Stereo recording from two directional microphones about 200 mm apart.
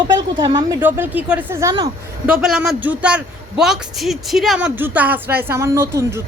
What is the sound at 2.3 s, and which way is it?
A man's voice, 5° right (ahead or behind).